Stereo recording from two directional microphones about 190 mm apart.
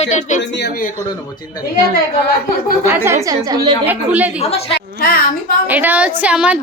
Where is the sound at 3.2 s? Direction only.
20° right (ahead or behind).